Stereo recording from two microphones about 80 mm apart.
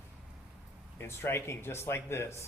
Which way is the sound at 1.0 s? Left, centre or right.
Left.